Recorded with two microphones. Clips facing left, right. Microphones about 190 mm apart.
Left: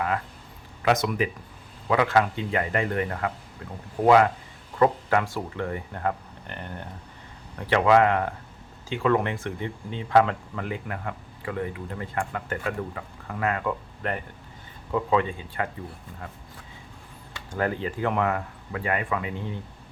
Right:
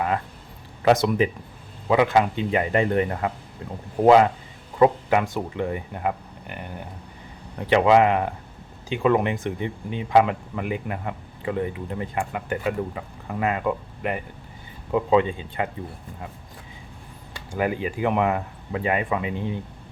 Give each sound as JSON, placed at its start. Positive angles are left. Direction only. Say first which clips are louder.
{"t": 0.8, "sound": "speech", "louder": "right 5 dB", "side_deg": -30}
{"t": 7.7, "sound": "speech", "louder": "right 2 dB", "side_deg": -20}
{"t": 17.5, "sound": "speech", "louder": "right 2 dB", "side_deg": -10}